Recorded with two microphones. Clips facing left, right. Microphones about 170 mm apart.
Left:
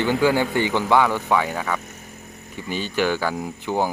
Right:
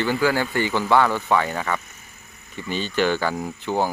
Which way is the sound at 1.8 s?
50° left (ahead or behind).